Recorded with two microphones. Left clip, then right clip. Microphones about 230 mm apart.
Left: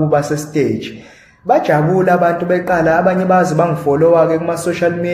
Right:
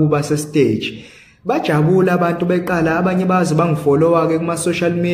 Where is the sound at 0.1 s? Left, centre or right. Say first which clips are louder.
Left 2 dB; right.